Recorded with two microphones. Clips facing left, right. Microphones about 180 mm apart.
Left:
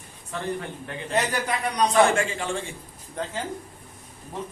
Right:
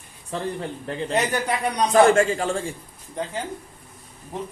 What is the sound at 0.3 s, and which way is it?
Speech, 30° right (ahead or behind).